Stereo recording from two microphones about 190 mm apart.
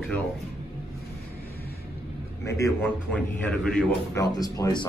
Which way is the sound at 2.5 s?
15° left (ahead or behind).